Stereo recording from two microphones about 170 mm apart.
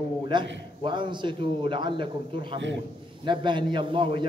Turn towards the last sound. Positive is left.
turn(degrees=-30)  # may be behind; listen again after turning